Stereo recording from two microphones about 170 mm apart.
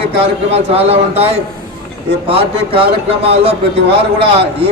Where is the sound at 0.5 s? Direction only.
35° right (ahead or behind).